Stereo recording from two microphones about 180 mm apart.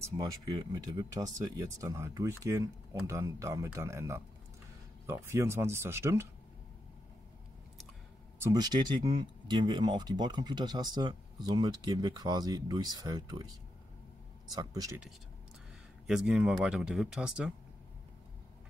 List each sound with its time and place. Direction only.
0.6 s speech: 20° right (ahead or behind)
8.4 s speech: 20° right (ahead or behind)
14.5 s speech: 20° right (ahead or behind)
16.1 s speech: 5° right (ahead or behind)